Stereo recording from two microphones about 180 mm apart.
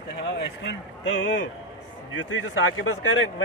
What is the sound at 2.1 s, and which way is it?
Speech, 90° left.